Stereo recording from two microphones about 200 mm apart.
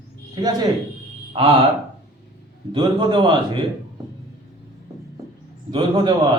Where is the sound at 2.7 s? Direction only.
20° right (ahead or behind).